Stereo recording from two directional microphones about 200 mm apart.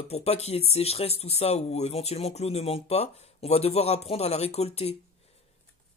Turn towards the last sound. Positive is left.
turn(degrees=30)  # may be behind; listen again after turning